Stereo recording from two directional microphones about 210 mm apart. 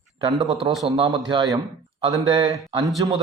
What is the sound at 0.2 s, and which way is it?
Speech, 20° right (ahead or behind).